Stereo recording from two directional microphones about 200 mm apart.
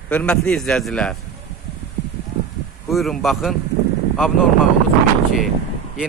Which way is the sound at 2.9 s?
Centre (ahead or behind).